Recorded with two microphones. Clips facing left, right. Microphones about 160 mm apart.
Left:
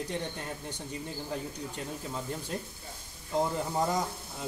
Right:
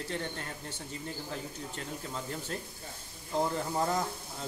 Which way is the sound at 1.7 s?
10° left (ahead or behind).